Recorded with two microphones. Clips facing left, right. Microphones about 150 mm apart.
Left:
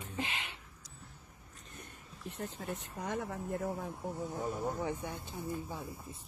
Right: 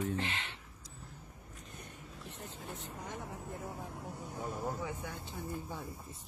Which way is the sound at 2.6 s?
65° left (ahead or behind).